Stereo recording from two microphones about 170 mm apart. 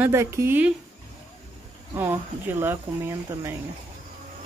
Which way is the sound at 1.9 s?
15° right (ahead or behind).